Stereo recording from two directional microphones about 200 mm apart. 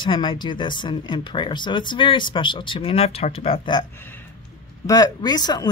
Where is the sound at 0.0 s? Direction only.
25° left (ahead or behind).